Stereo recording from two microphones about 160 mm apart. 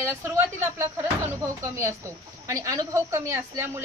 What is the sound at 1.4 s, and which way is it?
Speech, 20° right (ahead or behind).